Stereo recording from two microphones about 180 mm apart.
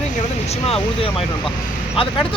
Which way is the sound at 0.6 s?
30° left (ahead or behind).